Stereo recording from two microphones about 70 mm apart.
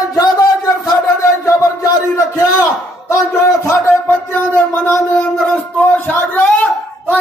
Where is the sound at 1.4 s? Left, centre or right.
Left.